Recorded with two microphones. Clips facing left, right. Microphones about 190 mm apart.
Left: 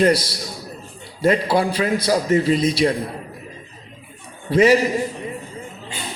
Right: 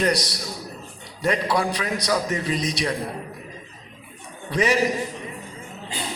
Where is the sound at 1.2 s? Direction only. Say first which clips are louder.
Left 5 dB; 30° left (ahead or behind).